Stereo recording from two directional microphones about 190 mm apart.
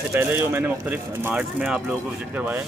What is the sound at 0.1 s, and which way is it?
Speech, 10° right (ahead or behind).